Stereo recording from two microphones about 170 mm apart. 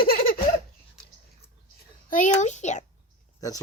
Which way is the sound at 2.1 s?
45° left (ahead or behind).